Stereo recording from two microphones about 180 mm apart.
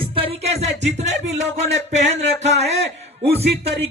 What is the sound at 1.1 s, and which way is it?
Speech, 80° right.